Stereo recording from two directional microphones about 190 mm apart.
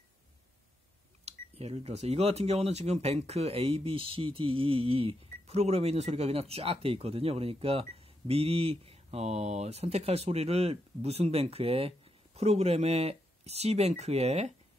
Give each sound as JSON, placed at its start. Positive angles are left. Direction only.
{"t": 1.2, "sound": "speech", "side_deg": -35}